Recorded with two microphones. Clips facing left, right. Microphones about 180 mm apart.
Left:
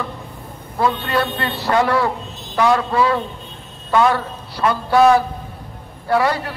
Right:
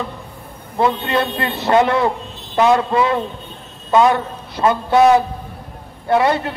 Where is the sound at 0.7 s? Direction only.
20° right (ahead or behind).